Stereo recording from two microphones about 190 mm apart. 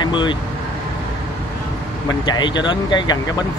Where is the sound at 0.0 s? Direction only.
25° left (ahead or behind).